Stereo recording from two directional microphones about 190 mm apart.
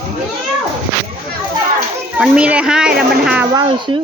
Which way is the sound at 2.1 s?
5° right (ahead or behind).